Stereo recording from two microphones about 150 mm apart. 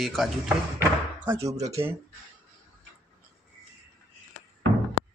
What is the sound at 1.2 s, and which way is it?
Speech, 20° right (ahead or behind).